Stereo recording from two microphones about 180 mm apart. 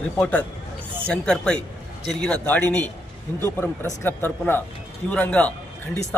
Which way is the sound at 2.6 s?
20° right (ahead or behind).